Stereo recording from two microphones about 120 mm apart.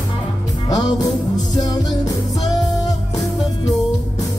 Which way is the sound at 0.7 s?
30° left (ahead or behind).